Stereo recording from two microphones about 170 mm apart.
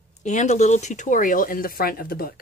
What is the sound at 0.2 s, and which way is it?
Speech, 45° left (ahead or behind).